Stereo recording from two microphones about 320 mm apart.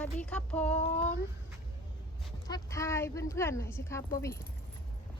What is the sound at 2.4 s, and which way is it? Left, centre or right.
Speech, centre.